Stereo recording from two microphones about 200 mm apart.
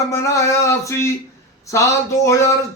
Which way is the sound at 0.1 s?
15° left (ahead or behind).